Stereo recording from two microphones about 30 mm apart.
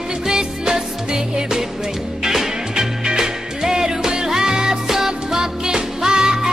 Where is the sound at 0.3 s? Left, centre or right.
Right.